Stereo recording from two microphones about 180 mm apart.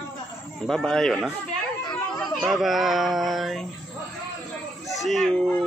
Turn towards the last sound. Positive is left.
turn(degrees=5)  # may be behind; listen again after turning